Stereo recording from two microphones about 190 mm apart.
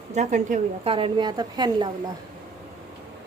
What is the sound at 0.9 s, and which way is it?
A woman's voice, 30° right (ahead or behind).